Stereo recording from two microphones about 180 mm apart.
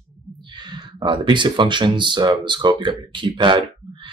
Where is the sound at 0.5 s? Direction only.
25° right (ahead or behind).